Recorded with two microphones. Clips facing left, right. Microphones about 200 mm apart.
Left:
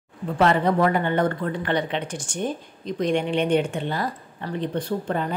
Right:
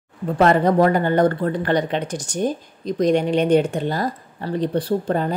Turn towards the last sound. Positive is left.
turn(degrees=-35)  # may be behind; listen again after turning